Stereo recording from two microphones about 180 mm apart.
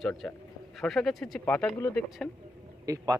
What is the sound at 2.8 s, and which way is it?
Speech, 20° right (ahead or behind).